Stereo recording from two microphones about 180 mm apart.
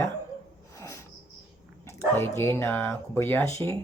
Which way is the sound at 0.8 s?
15° left (ahead or behind).